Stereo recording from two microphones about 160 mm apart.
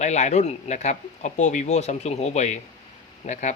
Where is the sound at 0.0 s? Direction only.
45° left (ahead or behind).